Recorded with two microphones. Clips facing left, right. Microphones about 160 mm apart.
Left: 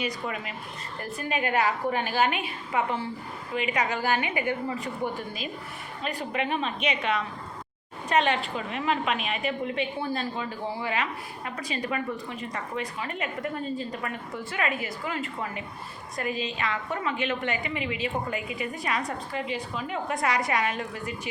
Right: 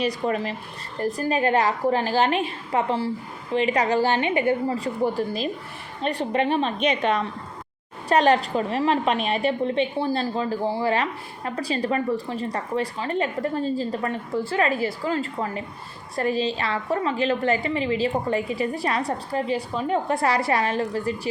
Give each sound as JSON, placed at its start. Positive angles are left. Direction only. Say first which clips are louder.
{"t": 0.0, "sound": "a woman's voice", "louder": "right 8 dB", "side_deg": -35}